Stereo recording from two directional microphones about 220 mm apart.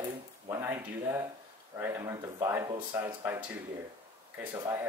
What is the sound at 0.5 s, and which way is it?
Speech, 10° right (ahead or behind).